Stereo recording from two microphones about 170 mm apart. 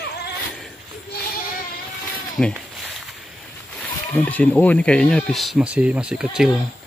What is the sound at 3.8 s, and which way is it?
Speech, 10° left (ahead or behind).